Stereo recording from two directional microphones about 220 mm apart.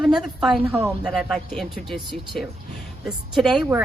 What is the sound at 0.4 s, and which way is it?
A woman's voice, centre (ahead or behind).